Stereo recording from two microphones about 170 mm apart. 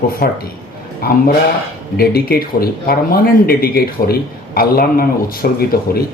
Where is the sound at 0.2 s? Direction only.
60° left (ahead or behind).